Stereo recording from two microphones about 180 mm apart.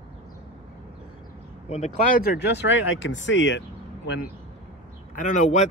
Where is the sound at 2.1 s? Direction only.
60° left (ahead or behind); by 3.6 s 90° left.